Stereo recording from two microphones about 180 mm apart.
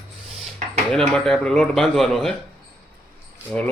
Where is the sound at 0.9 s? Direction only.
5° left (ahead or behind).